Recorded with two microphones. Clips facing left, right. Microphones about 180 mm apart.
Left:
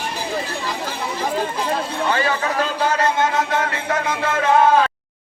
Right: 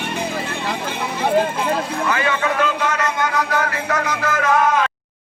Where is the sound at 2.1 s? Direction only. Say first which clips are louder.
Even; 35° left (ahead or behind).